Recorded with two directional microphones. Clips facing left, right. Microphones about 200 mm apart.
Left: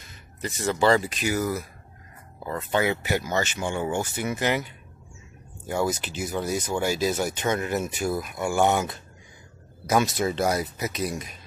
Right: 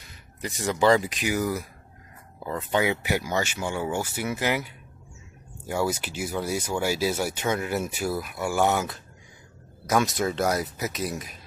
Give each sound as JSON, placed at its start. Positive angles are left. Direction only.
{"t": 0.4, "sound": "speech", "side_deg": -15}